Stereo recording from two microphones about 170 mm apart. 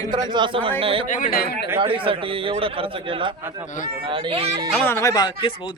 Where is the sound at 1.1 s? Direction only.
50° left (ahead or behind).